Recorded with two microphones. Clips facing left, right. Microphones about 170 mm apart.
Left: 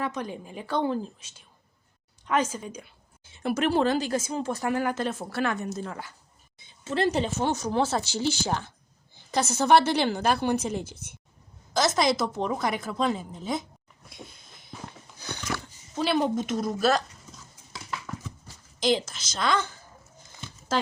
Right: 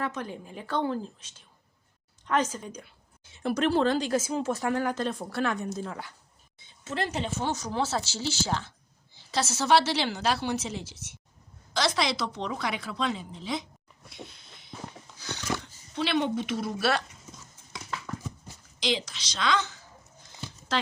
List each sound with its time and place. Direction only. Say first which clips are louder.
0.0 s a woman's voice: left 2 dB; 15° left (ahead or behind); by 6.1 s centre (ahead or behind)
6.8 s speech: left 6 dB; 30° left (ahead or behind)
7.4 s a woman's voice: left 3 dB; 55° left (ahead or behind)
14.3 s a sound: even; 50° left (ahead or behind)
15.6 s a woman's voice: left 3 dB; 45° left (ahead or behind)
18.1 s clip-clop: right 1 dB; 10° left (ahead or behind)
18.8 s a woman's voice: left 5 dB; 50° left (ahead or behind)